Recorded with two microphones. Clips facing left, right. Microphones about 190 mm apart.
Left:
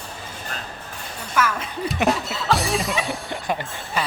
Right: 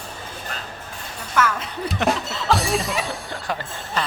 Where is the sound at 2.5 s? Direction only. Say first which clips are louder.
Right 1 dB; centre (ahead or behind).